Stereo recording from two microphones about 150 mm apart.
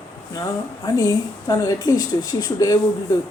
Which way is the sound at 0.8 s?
25° left (ahead or behind).